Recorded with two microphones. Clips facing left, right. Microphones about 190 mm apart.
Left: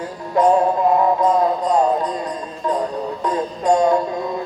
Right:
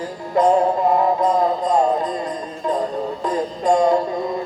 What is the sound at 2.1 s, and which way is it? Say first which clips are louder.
Music: even; 20° right (ahead or behind).